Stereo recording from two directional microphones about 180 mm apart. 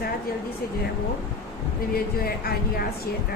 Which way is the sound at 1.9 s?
55° left (ahead or behind).